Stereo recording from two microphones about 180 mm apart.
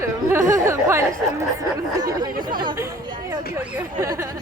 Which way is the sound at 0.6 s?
15° right (ahead or behind).